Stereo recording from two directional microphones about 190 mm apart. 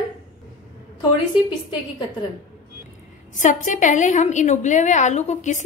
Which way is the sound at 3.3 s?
40° left (ahead or behind).